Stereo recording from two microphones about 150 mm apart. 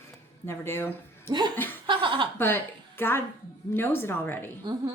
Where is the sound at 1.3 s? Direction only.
30° right (ahead or behind).